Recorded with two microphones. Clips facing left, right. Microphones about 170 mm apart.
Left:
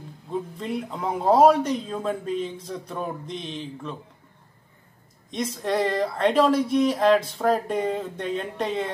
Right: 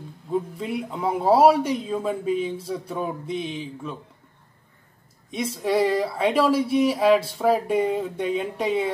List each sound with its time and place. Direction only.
0.6 s speech: 5° right (ahead or behind)
5.3 s speech: 10° right (ahead or behind)